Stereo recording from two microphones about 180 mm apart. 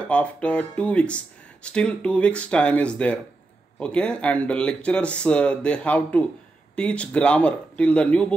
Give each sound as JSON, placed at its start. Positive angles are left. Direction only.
{"t": 0.1, "sound": "speech", "side_deg": 5}